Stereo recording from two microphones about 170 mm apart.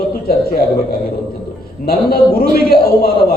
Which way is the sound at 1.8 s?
60° left (ahead or behind).